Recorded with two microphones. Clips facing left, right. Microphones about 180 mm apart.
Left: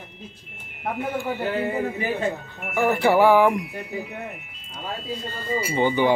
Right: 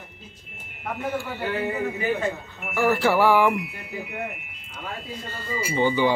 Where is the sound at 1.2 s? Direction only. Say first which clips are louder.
Left 5 dB; 50° left (ahead or behind).